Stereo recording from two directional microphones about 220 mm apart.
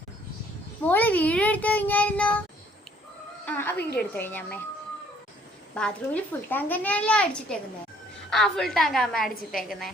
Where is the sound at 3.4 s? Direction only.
10° left (ahead or behind).